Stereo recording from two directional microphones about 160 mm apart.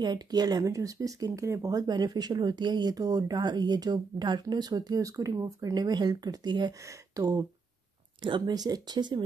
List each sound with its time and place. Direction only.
0.0 s speech: 25° right (ahead or behind)